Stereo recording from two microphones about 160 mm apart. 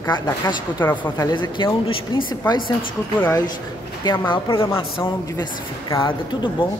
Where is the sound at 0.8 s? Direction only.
15° left (ahead or behind).